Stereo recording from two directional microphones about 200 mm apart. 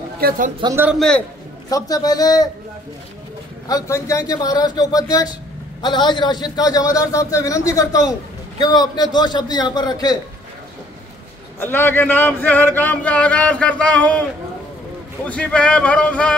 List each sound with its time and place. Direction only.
0.2 s speech: 45° right (ahead or behind)
0.7 s a man's voice: 5° right (ahead or behind)
1.7 s a man's voice: 20° left (ahead or behind)
3.6 s a man's voice: 15° left (ahead or behind)
11.6 s speech: 10° left (ahead or behind)
15.2 s speech: 5° left (ahead or behind)